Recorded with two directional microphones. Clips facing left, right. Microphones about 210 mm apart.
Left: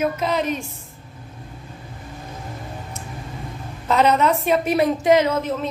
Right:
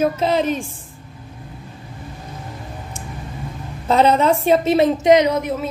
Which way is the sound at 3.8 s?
30° right (ahead or behind).